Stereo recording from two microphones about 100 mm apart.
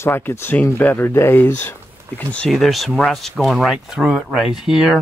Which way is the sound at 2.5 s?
Centre (ahead or behind).